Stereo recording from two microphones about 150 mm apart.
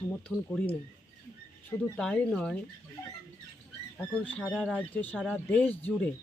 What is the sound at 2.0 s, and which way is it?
Speech, 5° left (ahead or behind).